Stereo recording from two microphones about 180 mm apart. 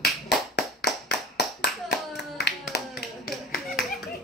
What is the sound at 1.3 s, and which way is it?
Clapping, 65° left (ahead or behind).